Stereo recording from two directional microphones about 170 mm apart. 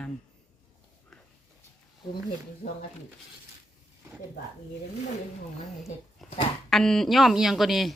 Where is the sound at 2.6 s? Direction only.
45° left (ahead or behind).